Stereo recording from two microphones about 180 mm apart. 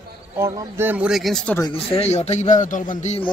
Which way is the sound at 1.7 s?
35° left (ahead or behind).